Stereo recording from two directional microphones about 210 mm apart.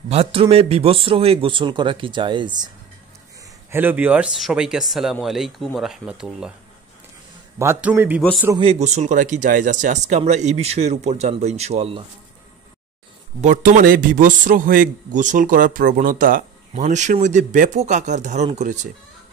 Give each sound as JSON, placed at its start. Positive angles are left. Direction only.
{"t": 0.1, "sound": "speech", "side_deg": -30}
{"t": 3.7, "sound": "speech", "side_deg": -10}
{"t": 7.5, "sound": "a man's voice", "side_deg": -10}
{"t": 8.2, "sound": "speech", "side_deg": 5}
{"t": 8.5, "sound": "a man's voice", "side_deg": -30}
{"t": 13.4, "sound": "a man's voice", "side_deg": -35}